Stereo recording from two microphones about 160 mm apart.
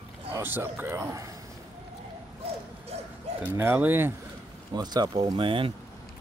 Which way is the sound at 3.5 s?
10° right (ahead or behind).